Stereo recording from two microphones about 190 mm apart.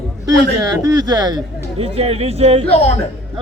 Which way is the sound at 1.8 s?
30° right (ahead or behind).